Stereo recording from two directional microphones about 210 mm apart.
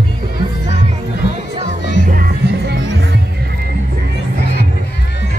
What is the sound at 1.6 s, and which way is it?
Music, 40° right (ahead or behind).